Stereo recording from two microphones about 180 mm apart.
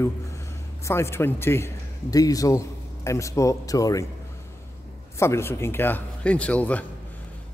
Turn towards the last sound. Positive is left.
turn(degrees=10)  # may be behind; listen again after turning